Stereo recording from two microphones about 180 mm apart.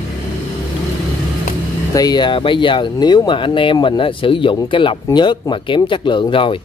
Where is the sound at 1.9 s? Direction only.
20° left (ahead or behind).